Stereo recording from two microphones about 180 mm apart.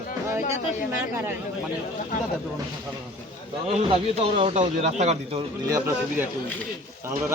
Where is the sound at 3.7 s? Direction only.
35° right (ahead or behind).